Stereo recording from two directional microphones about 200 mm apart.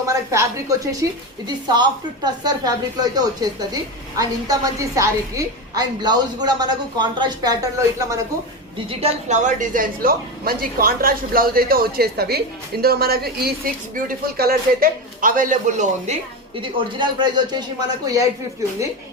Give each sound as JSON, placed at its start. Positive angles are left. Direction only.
{"t": 0.0, "sound": "a woman's voice", "side_deg": -15}
{"t": 9.0, "sound": "a woman's voice", "side_deg": -35}
{"t": 16.6, "sound": "a woman's voice", "side_deg": -25}